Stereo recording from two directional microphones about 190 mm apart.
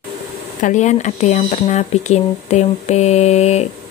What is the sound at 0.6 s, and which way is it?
Speech, 40° left (ahead or behind).